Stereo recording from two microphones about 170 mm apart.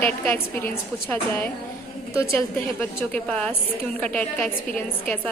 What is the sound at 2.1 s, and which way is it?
Speech, 15° left (ahead or behind).